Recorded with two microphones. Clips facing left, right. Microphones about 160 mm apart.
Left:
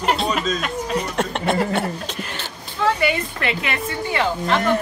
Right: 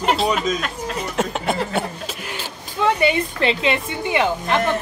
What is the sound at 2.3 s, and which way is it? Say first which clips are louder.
Speech: right 2 dB; 20° right (ahead or behind).